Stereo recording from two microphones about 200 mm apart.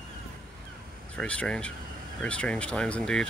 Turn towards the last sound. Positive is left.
turn(degrees=5)  # may be behind; listen again after turning